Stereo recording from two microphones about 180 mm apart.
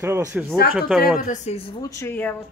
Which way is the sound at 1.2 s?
40° left (ahead or behind).